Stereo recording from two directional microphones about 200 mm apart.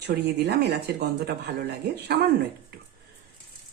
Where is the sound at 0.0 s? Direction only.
55° right (ahead or behind).